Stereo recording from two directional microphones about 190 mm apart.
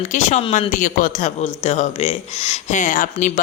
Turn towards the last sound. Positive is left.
turn(degrees=45)  # may be behind; listen again after turning